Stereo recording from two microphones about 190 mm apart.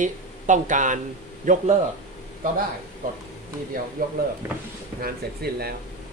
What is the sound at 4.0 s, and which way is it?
Speech, 45° right (ahead or behind).